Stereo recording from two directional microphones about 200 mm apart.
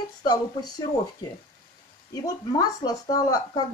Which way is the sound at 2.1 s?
20° left (ahead or behind).